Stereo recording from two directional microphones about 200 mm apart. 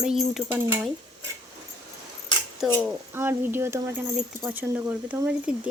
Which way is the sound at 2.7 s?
10° right (ahead or behind).